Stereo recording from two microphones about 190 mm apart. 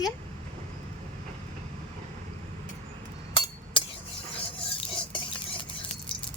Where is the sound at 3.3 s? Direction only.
25° left (ahead or behind).